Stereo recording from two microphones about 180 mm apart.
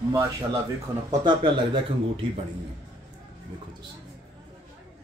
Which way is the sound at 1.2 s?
25° right (ahead or behind).